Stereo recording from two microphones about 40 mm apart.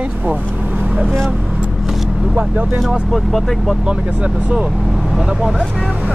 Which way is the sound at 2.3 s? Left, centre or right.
Right.